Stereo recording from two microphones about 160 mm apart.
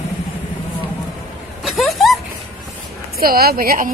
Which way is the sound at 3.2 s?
70° right (ahead or behind).